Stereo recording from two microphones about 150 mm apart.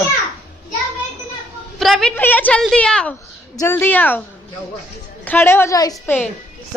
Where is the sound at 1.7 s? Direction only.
Centre (ahead or behind).